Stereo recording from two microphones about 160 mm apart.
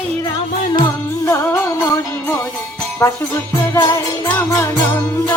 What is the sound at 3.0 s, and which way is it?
Jingle bell, 15° left (ahead or behind).